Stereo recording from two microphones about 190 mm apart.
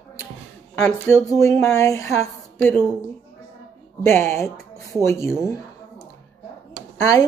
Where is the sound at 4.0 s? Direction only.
15° left (ahead or behind).